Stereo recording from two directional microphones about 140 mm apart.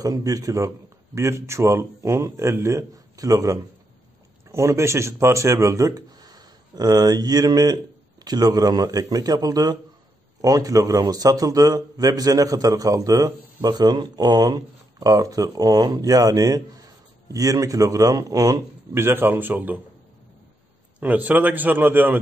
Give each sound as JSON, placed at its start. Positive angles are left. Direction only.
{"t": 0.0, "sound": "a man's voice", "side_deg": -25}
{"t": 21.0, "sound": "a man's voice", "side_deg": -10}